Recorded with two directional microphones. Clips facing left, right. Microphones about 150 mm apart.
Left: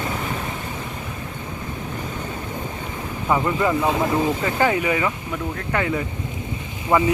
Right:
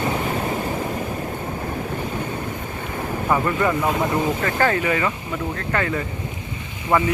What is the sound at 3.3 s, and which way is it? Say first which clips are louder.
Speech: left 1 dB; 15° left (ahead or behind).